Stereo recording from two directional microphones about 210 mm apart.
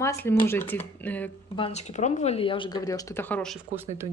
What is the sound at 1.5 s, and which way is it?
Speech, 30° left (ahead or behind).